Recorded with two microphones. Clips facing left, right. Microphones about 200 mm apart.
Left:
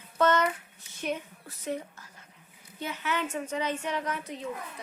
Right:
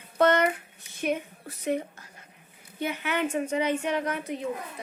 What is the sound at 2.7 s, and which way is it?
Speech, 60° right (ahead or behind).